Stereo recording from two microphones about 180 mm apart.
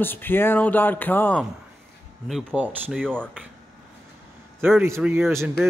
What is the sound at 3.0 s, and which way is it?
Speech, 5° left (ahead or behind).